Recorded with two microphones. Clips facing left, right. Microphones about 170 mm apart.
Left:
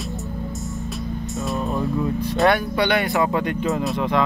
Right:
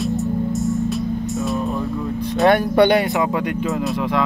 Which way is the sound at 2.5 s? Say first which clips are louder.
Right 7 dB; 55° right (ahead or behind).